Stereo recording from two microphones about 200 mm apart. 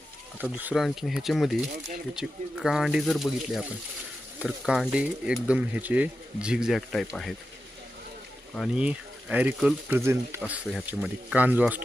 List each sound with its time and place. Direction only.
0.3 s speech: 10° right (ahead or behind)
8.5 s speech: 5° right (ahead or behind)